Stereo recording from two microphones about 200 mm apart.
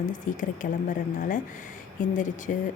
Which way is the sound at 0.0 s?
40° left (ahead or behind).